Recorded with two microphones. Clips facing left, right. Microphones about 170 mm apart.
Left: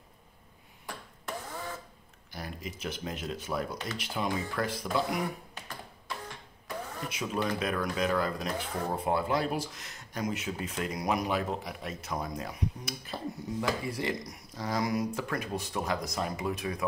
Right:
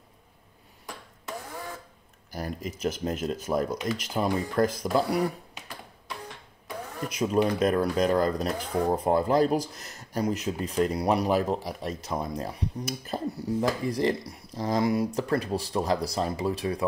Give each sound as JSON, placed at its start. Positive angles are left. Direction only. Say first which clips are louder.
{"t": 2.3, "sound": "speech", "louder": "right 6 dB", "side_deg": -40}
{"t": 7.5, "sound": "speech", "louder": "right 7 dB", "side_deg": -40}